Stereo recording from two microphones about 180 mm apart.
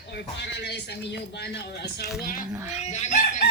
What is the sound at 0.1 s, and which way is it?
Speech, 70° left (ahead or behind).